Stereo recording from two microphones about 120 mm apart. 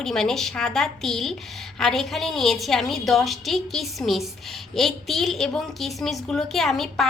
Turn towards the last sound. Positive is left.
turn(degrees=0)  # may be behind; listen again after turning